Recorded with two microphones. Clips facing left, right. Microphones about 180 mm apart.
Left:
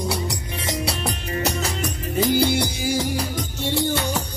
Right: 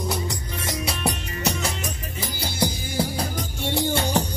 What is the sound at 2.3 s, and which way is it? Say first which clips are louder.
Music: left 5 dB; 75° left (ahead or behind).